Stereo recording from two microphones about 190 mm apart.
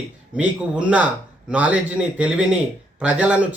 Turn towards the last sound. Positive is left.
turn(degrees=-5)  # may be behind; listen again after turning